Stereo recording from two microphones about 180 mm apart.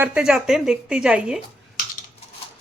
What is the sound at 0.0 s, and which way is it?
A woman's voice, 5° right (ahead or behind).